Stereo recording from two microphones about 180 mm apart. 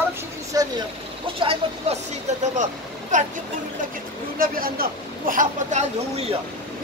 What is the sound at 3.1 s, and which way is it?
Speech, 45° right (ahead or behind).